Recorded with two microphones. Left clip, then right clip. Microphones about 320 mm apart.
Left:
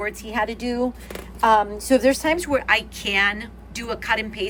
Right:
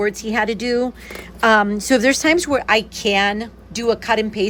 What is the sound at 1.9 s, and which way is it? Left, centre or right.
Speech, right.